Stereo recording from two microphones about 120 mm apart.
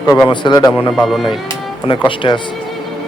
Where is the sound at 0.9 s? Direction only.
Centre (ahead or behind).